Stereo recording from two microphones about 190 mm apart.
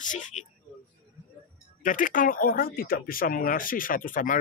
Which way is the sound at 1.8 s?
45° left (ahead or behind).